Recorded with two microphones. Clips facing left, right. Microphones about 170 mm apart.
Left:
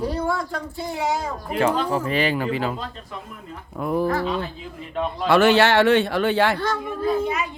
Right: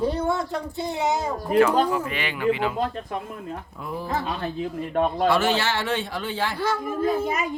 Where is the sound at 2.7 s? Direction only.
55° right (ahead or behind).